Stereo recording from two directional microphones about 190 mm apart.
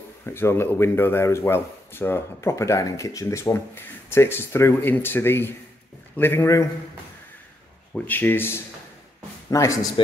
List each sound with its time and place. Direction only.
0.3 s speech: 15° left (ahead or behind)
7.9 s speech: 10° left (ahead or behind)